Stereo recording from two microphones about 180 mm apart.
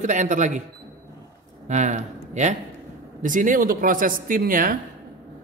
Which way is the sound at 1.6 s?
40° right (ahead or behind).